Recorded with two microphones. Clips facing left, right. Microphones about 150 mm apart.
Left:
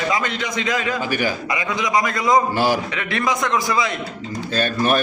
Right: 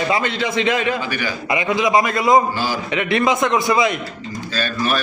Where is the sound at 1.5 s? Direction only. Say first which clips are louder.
Right 4 dB; 25° right (ahead or behind).